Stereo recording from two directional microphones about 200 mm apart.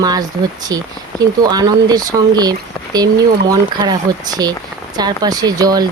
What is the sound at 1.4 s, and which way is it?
Speech, 20° right (ahead or behind).